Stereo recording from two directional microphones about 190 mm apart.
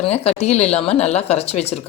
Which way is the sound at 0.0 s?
35° left (ahead or behind).